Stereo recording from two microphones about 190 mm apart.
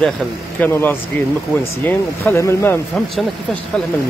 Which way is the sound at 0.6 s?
10° left (ahead or behind).